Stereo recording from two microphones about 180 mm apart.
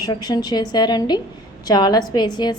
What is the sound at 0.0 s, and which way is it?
A woman's voice, 20° left (ahead or behind).